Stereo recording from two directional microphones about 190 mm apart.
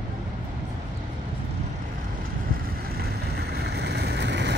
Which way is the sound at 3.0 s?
55° right (ahead or behind).